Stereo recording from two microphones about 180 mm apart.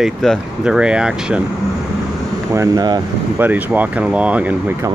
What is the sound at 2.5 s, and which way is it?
Speech, 20° right (ahead or behind).